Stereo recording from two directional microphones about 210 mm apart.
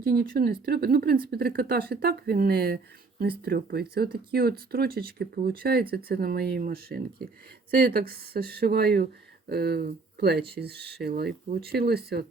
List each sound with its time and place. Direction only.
0.0 s speech: 45° right (ahead or behind)